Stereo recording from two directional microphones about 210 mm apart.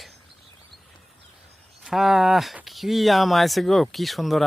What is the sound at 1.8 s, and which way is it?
Speech, centre (ahead or behind).